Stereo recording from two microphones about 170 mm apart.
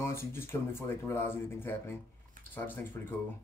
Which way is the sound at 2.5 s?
10° left (ahead or behind).